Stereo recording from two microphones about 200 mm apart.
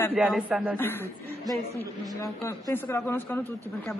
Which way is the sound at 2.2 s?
15° left (ahead or behind).